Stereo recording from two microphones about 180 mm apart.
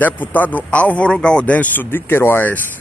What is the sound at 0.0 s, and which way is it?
Speech, 10° left (ahead or behind).